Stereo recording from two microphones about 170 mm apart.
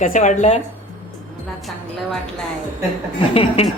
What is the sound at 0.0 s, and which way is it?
Speech, 50° left (ahead or behind).